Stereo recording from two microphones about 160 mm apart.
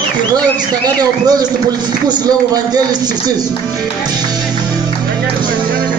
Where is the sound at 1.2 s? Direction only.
25° right (ahead or behind).